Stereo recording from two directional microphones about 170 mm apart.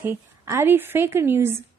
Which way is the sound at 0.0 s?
15° right (ahead or behind).